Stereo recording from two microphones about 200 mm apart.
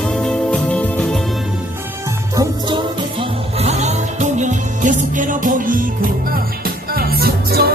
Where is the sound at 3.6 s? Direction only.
35° right (ahead or behind); by 7.7 s 50° right (ahead or behind).